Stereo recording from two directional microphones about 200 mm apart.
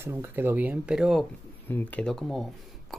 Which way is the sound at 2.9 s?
Centre (ahead or behind).